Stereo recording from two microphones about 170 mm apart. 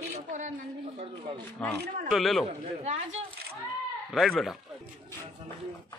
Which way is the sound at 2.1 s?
Centre (ahead or behind).